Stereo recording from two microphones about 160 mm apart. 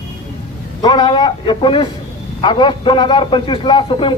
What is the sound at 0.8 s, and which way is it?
A man's voice, 25° left (ahead or behind).